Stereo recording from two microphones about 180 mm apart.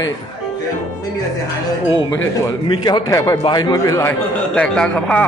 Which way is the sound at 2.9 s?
20° left (ahead or behind).